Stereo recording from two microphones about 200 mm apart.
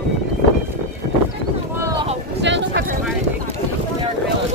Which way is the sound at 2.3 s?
60° right (ahead or behind).